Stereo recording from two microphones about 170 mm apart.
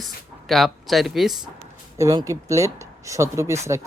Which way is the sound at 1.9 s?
20° right (ahead or behind).